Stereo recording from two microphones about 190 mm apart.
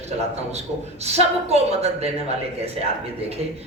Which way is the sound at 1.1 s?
35° right (ahead or behind).